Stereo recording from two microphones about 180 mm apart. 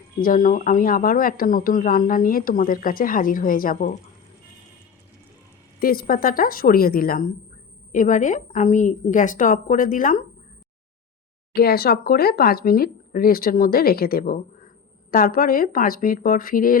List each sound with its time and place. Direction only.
0.2 s speech: 50° left (ahead or behind)
5.8 s speech: 55° left (ahead or behind)
11.5 s speech: 60° left (ahead or behind)